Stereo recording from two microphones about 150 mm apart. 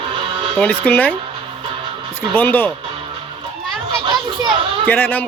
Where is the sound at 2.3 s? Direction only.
10° left (ahead or behind).